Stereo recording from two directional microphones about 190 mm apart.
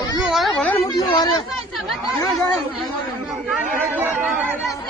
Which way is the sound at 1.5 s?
Centre (ahead or behind).